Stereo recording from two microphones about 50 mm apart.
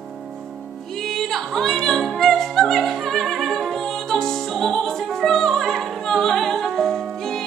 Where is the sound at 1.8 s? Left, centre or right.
Centre.